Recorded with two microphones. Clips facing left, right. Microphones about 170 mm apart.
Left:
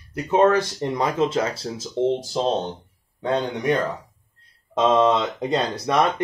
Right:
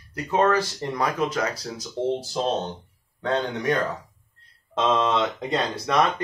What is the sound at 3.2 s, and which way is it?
Speech, 15° left (ahead or behind).